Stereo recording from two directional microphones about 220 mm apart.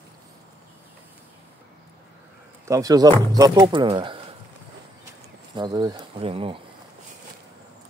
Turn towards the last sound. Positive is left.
turn(degrees=-25)  # may be behind; listen again after turning